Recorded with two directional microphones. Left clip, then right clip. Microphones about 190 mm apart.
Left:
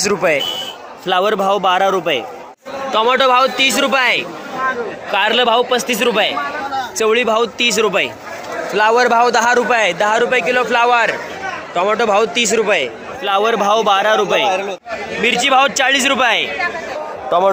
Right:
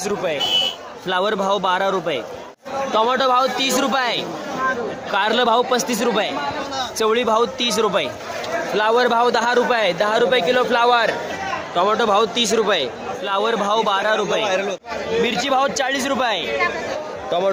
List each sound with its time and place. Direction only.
0.0 s speech: 25° left (ahead or behind)
1.0 s a man's voice: 5° left (ahead or behind)
5.1 s a man's voice: centre (ahead or behind)
8.7 s a man's voice: 15° left (ahead or behind)
14.4 s speech: 30° right (ahead or behind)
15.2 s a man's voice: 5° left (ahead or behind)